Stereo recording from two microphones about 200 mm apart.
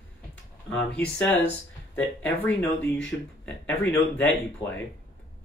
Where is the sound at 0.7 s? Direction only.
60° left (ahead or behind).